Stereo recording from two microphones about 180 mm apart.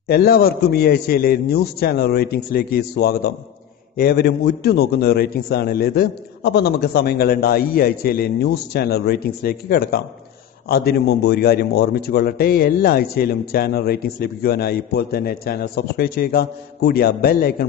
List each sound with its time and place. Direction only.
0.1 s a man's voice: 60° left (ahead or behind)